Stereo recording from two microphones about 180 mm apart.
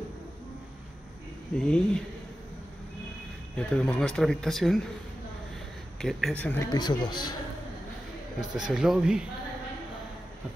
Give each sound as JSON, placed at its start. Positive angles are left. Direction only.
{"t": 1.6, "sound": "speech", "side_deg": 5}
{"t": 3.5, "sound": "speech", "side_deg": 5}
{"t": 5.9, "sound": "speech", "side_deg": 0}
{"t": 6.7, "sound": "speech", "side_deg": 25}
{"t": 8.5, "sound": "speech", "side_deg": -5}